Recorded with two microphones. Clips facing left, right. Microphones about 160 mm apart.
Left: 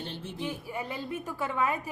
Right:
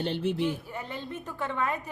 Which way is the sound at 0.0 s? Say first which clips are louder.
Right 10 dB; 75° right (ahead or behind).